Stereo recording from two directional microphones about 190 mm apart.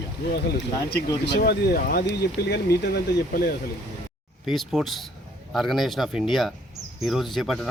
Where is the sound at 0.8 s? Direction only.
55° left (ahead or behind).